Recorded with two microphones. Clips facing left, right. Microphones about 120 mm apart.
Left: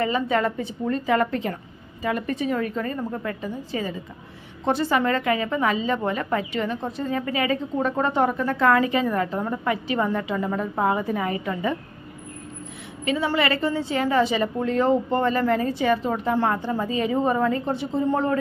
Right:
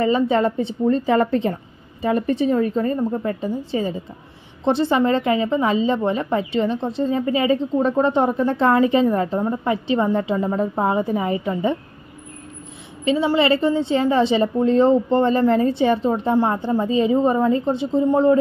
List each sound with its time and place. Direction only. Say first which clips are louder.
0.0 s a woman's voice: right 5 dB; 25° right (ahead or behind)
13.0 s a woman's voice: right 5 dB; 25° right (ahead or behind)